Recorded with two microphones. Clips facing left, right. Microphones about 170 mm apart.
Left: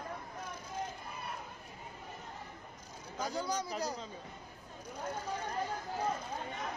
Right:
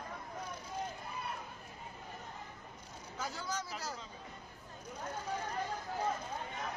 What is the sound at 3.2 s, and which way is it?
Speech, 15° left (ahead or behind).